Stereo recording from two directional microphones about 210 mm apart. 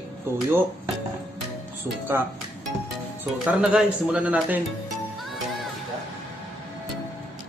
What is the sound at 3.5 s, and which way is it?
Speech, 5° right (ahead or behind).